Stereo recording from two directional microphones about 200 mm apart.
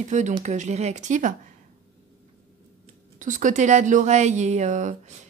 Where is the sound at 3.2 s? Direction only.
40° right (ahead or behind).